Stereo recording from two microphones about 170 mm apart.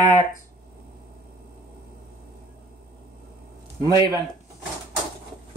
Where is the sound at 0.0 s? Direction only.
45° left (ahead or behind).